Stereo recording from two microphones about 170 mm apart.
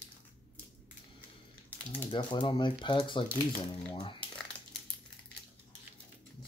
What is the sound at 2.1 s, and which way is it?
Speech, 30° left (ahead or behind).